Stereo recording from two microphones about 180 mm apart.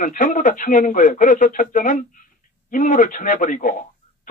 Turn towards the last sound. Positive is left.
turn(degrees=45)  # may be behind; listen again after turning